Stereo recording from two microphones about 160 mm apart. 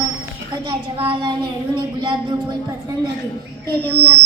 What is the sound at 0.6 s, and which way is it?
A woman's voice, 35° right (ahead or behind).